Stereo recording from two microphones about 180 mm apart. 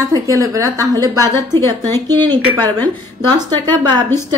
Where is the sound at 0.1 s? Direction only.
20° right (ahead or behind).